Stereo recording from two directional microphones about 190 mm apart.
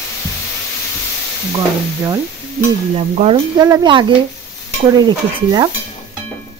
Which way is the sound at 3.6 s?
20° right (ahead or behind).